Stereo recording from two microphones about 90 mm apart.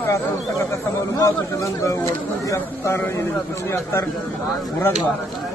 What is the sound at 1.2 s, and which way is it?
A man's voice, 40° left (ahead or behind).